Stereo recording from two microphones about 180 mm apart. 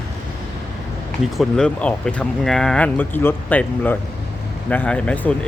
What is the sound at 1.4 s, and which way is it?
Speech, 5° left (ahead or behind).